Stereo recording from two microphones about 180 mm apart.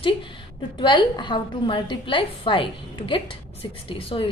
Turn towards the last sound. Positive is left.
turn(degrees=30)  # may be behind; listen again after turning